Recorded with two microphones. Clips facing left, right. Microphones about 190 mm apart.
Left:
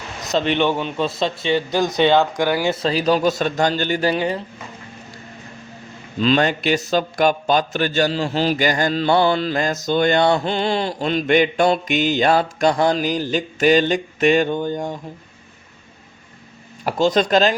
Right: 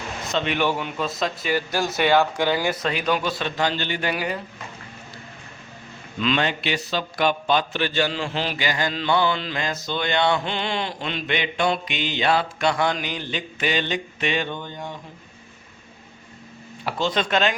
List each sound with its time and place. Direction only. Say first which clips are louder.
0.3 s a man's voice: left 5 dB; 35° left (ahead or behind); by 2.6 s 15° left (ahead or behind)
2.6 s a man's voice: left 5 dB; 30° left (ahead or behind)
4.1 s a man's voice: left 6 dB; 25° left (ahead or behind)
6.1 s a man's voice: left 6 dB; 35° left (ahead or behind)
16.8 s speech: left 7 dB; 40° left (ahead or behind)